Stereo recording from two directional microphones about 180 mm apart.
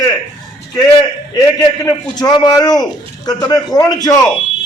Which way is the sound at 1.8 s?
20° left (ahead or behind).